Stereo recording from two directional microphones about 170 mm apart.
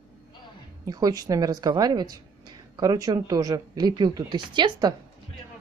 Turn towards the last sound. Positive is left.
turn(degrees=-25)  # may be behind; listen again after turning